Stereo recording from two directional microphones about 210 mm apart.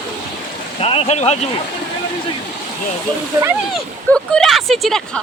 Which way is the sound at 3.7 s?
5° left (ahead or behind).